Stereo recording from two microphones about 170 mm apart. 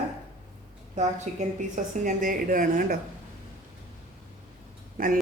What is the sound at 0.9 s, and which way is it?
A woman's voice, 45° right (ahead or behind).